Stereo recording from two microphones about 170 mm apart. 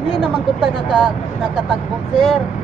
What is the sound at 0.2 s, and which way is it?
Speech, centre (ahead or behind).